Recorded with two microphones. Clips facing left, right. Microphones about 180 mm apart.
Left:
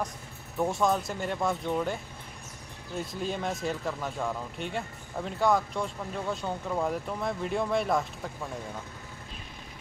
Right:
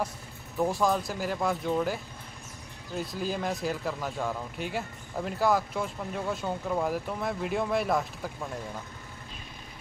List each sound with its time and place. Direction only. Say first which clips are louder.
0.6 s speech: even; centre (ahead or behind)
3.0 s speech: right 1 dB; centre (ahead or behind)